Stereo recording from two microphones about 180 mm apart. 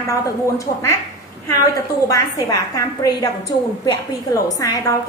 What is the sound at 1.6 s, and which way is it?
A woman's voice, 20° left (ahead or behind).